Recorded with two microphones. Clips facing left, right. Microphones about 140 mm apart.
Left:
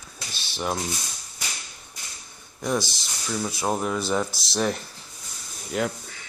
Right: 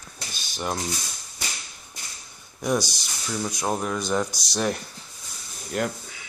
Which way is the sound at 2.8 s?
Centre (ahead or behind).